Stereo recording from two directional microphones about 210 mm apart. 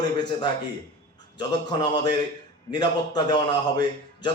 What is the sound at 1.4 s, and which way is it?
A man's voice, 20° left (ahead or behind).